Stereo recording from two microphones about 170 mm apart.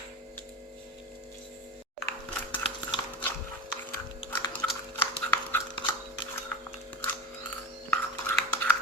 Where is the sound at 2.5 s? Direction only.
30° left (ahead or behind).